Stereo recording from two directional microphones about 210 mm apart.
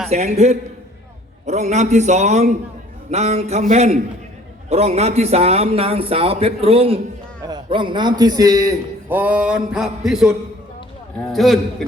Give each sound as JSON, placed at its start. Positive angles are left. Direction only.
{"t": 0.1, "sound": "a man's voice", "side_deg": -30}